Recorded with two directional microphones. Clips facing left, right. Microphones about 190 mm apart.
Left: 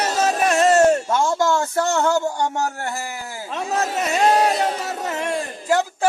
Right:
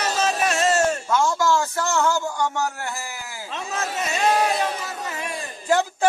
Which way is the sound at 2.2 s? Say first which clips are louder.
Left 2 dB; 30° left (ahead or behind).